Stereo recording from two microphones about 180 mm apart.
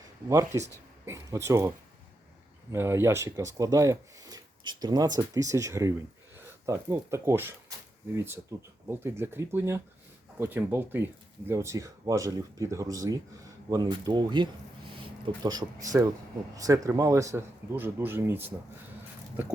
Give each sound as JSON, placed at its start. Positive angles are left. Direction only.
{"t": 0.3, "sound": "speech", "side_deg": -15}
{"t": 2.7, "sound": "a man's voice", "side_deg": -15}
{"t": 16.6, "sound": "speech", "side_deg": -20}